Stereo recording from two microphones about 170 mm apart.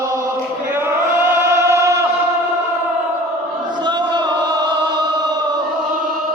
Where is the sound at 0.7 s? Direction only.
15° right (ahead or behind).